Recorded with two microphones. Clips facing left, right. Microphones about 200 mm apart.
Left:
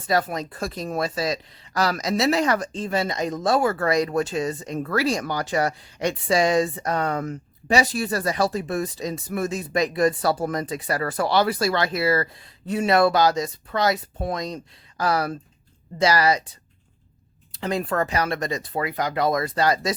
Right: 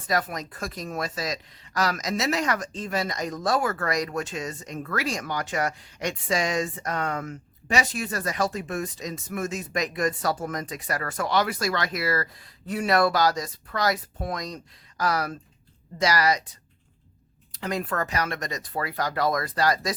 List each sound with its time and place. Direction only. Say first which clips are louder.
0.1 s speech: left 4 dB; 30° left (ahead or behind)